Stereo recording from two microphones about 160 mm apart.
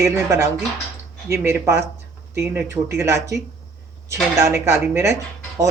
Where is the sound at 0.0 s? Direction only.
20° right (ahead or behind).